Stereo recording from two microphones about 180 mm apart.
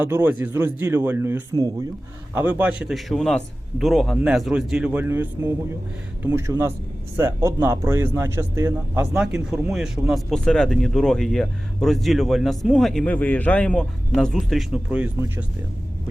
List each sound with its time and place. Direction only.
0.0 s a man's voice: 10° right (ahead or behind)
9.1 s speech: 5° right (ahead or behind)